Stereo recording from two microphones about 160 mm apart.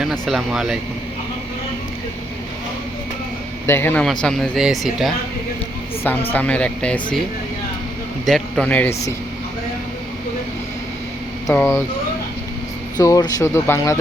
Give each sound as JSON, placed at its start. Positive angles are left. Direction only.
{"t": 0.0, "sound": "speech", "side_deg": 0}
{"t": 3.7, "sound": "speech", "side_deg": 15}
{"t": 6.3, "sound": "speech", "side_deg": 10}
{"t": 8.2, "sound": "speech", "side_deg": 0}
{"t": 11.5, "sound": "speech", "side_deg": 20}
{"t": 13.0, "sound": "speech", "side_deg": 20}